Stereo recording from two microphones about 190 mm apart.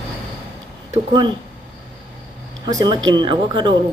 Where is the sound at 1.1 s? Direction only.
25° right (ahead or behind).